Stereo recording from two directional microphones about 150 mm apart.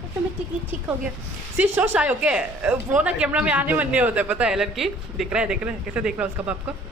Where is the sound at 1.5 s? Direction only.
15° right (ahead or behind).